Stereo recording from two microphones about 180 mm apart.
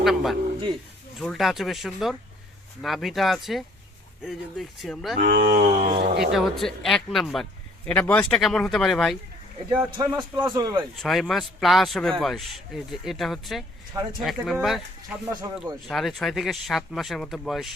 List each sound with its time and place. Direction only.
0.0 s a man's voice: centre (ahead or behind)
5.1 s speech: 65° right (ahead or behind)
5.7 s speech: 35° right (ahead or behind)
6.1 s speech: centre (ahead or behind)
10.0 s a man's voice: 25° right (ahead or behind)
10.9 s speech: centre (ahead or behind)
15.3 s a man's voice: 20° right (ahead or behind)
15.9 s speech: centre (ahead or behind)